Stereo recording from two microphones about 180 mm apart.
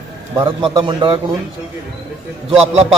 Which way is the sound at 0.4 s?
25° right (ahead or behind).